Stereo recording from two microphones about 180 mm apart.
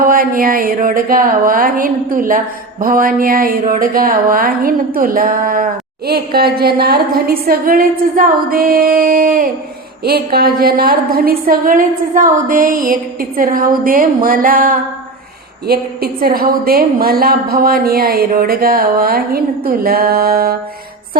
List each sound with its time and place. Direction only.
0.0 s a woman's voice: 50° right (ahead or behind)